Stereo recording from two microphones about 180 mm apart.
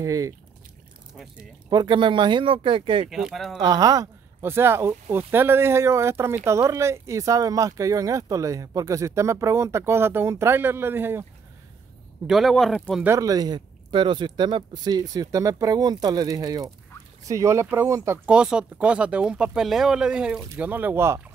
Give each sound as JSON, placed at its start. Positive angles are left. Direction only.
{"t": 0.0, "sound": "speech", "side_deg": -15}
{"t": 1.7, "sound": "speech", "side_deg": -25}
{"t": 3.1, "sound": "speech", "side_deg": 0}
{"t": 3.5, "sound": "speech", "side_deg": -20}
{"t": 12.3, "sound": "speech", "side_deg": 0}
{"t": 13.0, "sound": "speech", "side_deg": -15}